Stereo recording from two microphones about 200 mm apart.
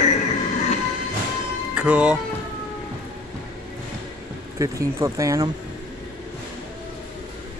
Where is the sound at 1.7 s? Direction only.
5° right (ahead or behind).